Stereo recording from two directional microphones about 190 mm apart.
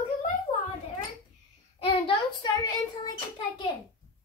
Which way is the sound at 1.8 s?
25° left (ahead or behind).